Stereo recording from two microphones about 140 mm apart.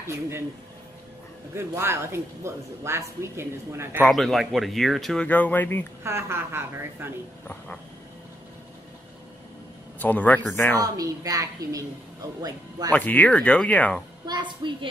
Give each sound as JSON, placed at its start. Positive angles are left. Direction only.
{"t": 0.0, "sound": "speech", "side_deg": -20}
{"t": 1.5, "sound": "speech", "side_deg": -20}
{"t": 4.1, "sound": "speech", "side_deg": 0}
{"t": 6.0, "sound": "speech", "side_deg": -20}
{"t": 7.4, "sound": "a sound", "side_deg": 10}
{"t": 9.9, "sound": "speech", "side_deg": 10}
{"t": 10.8, "sound": "speech", "side_deg": -25}
{"t": 12.9, "sound": "speech", "side_deg": 10}
{"t": 14.2, "sound": "a woman's voice", "side_deg": -30}